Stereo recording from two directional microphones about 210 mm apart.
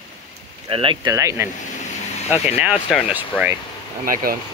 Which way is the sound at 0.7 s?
25° right (ahead or behind).